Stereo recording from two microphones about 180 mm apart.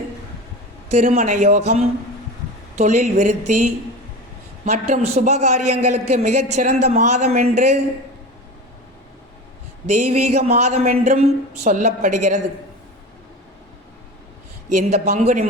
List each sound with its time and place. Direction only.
0.9 s a man's voice: 40° right (ahead or behind)
9.8 s a man's voice: 40° right (ahead or behind)
14.7 s a man's voice: 40° right (ahead or behind)